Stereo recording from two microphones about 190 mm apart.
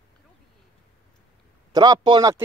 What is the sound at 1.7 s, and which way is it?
Speech, 20° right (ahead or behind).